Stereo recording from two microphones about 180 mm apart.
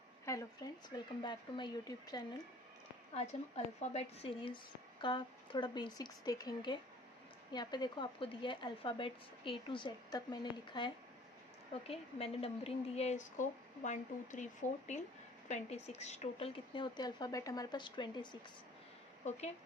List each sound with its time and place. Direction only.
0.3 s speech: 20° left (ahead or behind)
3.2 s a woman's voice: 40° left (ahead or behind)